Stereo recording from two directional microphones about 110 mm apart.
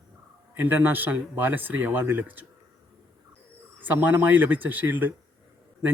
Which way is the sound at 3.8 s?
15° right (ahead or behind).